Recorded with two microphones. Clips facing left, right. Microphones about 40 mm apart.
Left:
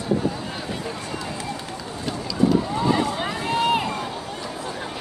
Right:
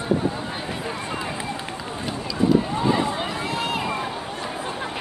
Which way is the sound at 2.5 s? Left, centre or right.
Centre.